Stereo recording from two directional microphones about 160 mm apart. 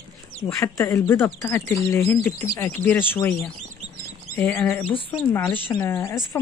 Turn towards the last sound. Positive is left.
turn(degrees=15)  # may be behind; listen again after turning